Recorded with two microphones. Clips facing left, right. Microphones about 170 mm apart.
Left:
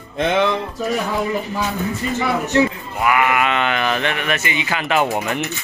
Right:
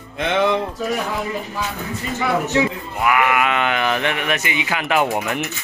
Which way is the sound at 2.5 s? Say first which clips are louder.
Left 2 dB; centre (ahead or behind).